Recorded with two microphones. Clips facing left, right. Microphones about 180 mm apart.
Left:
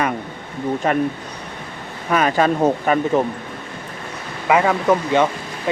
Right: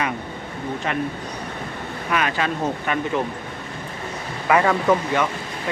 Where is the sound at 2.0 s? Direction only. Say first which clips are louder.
Left 6 dB; 40° left (ahead or behind).